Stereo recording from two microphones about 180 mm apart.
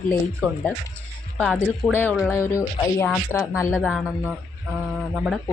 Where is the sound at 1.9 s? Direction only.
10° left (ahead or behind).